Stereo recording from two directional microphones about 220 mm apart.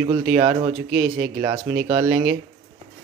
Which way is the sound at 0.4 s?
20° right (ahead or behind).